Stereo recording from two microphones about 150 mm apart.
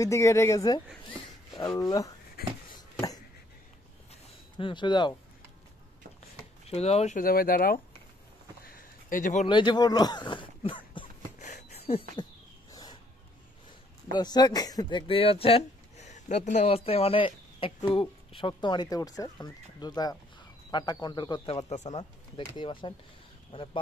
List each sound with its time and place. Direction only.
0.0 s speech: 20° left (ahead or behind)
1.8 s speech: 25° left (ahead or behind)
2.4 s a sound: 90° left
2.7 s a sound: 25° left (ahead or behind)
6.7 s speech: 45° left (ahead or behind)
7.2 s speech: 75° left (ahead or behind)
8.6 s a sound: 70° left (ahead or behind)
9.5 s speech: 30° left (ahead or behind)
11.3 s a sound: 50° left (ahead or behind)
14.1 s speech: 30° left (ahead or behind)
21.6 s speech: 50° left (ahead or behind)
22.6 s speech: 35° left (ahead or behind)